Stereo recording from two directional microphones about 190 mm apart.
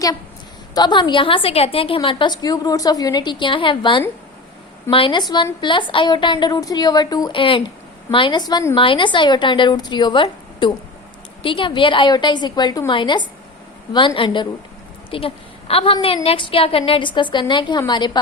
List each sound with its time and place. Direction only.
0.7 s a woman's voice: 25° left (ahead or behind)